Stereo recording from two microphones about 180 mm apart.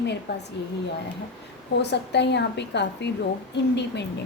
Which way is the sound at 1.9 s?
70° left (ahead or behind).